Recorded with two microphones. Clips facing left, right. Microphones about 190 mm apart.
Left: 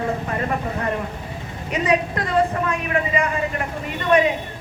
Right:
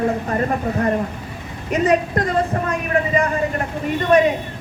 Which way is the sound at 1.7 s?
45° right (ahead or behind).